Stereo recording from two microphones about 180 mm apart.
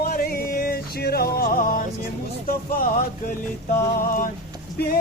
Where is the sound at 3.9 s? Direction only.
50° left (ahead or behind).